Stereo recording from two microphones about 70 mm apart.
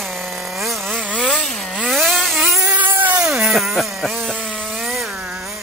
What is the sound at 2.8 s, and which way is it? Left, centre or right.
Cat, right.